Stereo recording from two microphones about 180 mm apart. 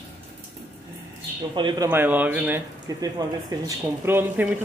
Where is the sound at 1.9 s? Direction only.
10° right (ahead or behind).